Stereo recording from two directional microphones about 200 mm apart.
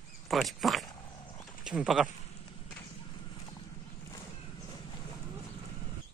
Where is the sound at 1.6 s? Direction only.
5° right (ahead or behind).